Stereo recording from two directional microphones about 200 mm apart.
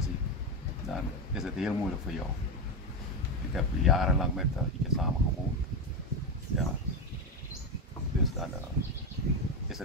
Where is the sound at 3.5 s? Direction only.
Centre (ahead or behind).